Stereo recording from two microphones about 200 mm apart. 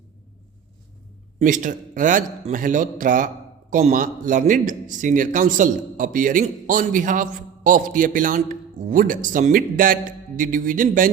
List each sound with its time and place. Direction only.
1.4 s speech: 40° right (ahead or behind)